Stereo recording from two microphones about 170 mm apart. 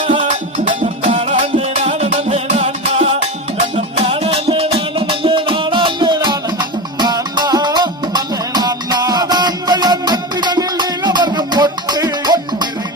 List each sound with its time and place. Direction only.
0.8 s music: 40° right (ahead or behind)